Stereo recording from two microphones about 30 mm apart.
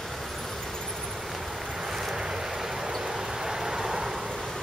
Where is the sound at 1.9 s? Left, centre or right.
Centre.